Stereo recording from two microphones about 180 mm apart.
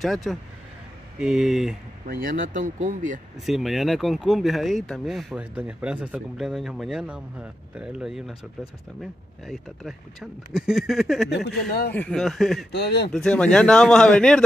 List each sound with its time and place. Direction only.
0.0 s speech: centre (ahead or behind)
2.0 s speech: 50° right (ahead or behind)
3.4 s speech: centre (ahead or behind)
11.3 s speech: 70° left (ahead or behind)
11.9 s speech: 5° left (ahead or behind)
12.7 s speech: 65° left (ahead or behind)
13.1 s speech: 5° left (ahead or behind)